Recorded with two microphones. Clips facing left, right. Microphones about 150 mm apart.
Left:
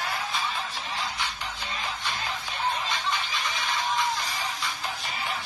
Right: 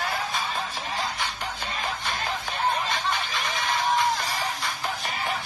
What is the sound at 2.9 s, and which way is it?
Music, 55° right (ahead or behind).